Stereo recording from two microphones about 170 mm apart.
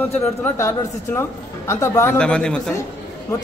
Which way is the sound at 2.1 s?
5° left (ahead or behind).